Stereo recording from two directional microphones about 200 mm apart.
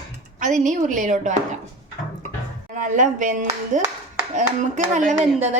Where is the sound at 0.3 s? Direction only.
40° right (ahead or behind).